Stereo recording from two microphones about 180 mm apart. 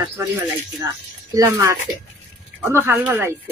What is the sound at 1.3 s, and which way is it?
Speech, 15° right (ahead or behind).